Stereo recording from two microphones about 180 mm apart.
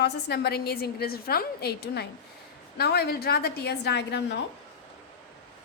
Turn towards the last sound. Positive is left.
turn(degrees=70)  # may be behind; listen again after turning